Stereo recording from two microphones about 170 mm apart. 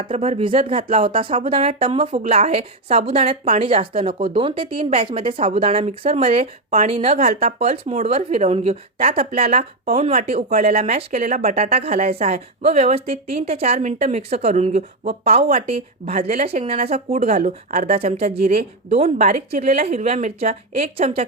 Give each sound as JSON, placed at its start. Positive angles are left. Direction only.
{"t": 0.0, "sound": "speech", "side_deg": -35}
{"t": 11.5, "sound": "speech", "side_deg": -40}